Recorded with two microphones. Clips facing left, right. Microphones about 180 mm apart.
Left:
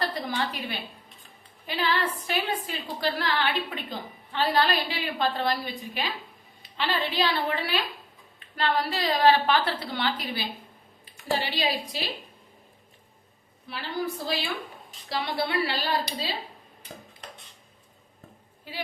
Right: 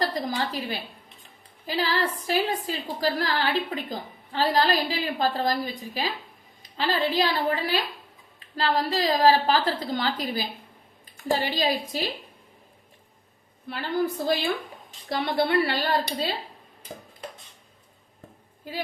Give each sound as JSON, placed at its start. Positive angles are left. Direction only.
{"t": 0.0, "sound": "a woman's voice", "side_deg": -35}
{"t": 13.7, "sound": "a woman's voice", "side_deg": -50}